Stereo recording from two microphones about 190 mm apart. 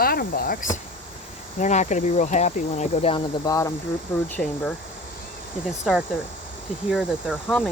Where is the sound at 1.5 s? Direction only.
40° left (ahead or behind).